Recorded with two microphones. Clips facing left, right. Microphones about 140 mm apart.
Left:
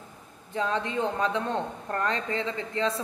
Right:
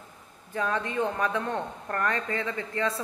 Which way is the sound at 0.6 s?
20° left (ahead or behind).